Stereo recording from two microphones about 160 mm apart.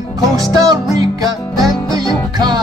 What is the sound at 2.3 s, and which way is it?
Music, 20° right (ahead or behind).